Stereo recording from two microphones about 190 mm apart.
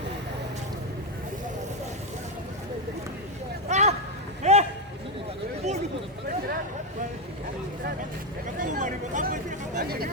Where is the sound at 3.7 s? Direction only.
35° right (ahead or behind).